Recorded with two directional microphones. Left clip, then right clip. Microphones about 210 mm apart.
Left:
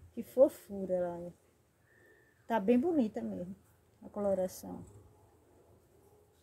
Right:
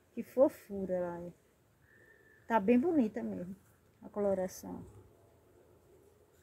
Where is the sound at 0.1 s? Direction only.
Centre (ahead or behind).